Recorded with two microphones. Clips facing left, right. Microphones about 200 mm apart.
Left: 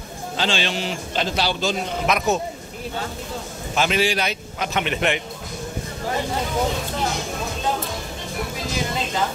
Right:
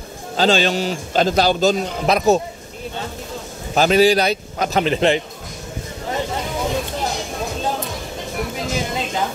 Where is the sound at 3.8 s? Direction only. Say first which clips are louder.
Right 7 dB; 40° right (ahead or behind).